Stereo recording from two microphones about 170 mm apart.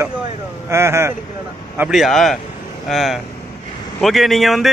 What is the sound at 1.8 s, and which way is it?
A man's voice, centre (ahead or behind).